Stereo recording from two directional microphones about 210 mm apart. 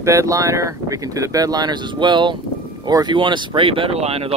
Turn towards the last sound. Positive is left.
turn(degrees=-30)  # may be behind; listen again after turning